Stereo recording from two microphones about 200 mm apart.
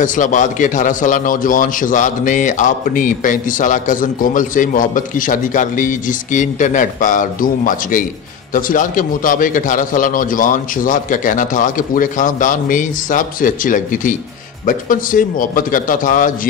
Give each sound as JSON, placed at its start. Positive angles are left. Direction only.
{"t": 0.0, "sound": "a man's voice", "side_deg": 40}